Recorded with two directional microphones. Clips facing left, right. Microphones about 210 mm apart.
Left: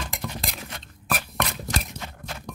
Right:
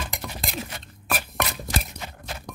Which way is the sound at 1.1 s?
5° right (ahead or behind).